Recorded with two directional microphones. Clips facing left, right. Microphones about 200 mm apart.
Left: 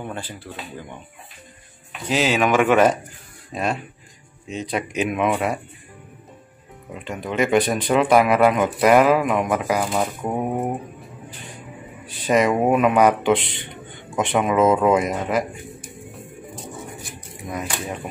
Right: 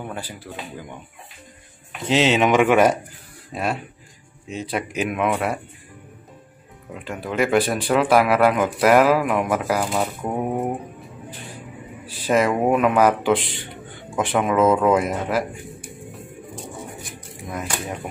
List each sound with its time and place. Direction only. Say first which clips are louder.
0.1 s speech: even; 10° right (ahead or behind)
2.0 s speech: right 2 dB; 25° right (ahead or behind)
4.5 s speech: left 1 dB; 5° right (ahead or behind)
7.1 s speech: left 1 dB; 5° right (ahead or behind)
12.3 s speech: left 1 dB; centre (ahead or behind)
17.5 s speech: left 1 dB; centre (ahead or behind)